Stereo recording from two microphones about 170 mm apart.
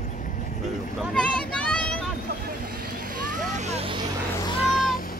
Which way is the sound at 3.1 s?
50° right (ahead or behind).